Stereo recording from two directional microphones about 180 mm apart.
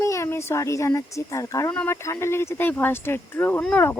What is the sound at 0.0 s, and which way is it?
Speech, 15° left (ahead or behind).